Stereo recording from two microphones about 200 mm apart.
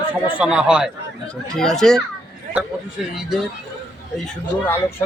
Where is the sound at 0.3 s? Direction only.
5° right (ahead or behind).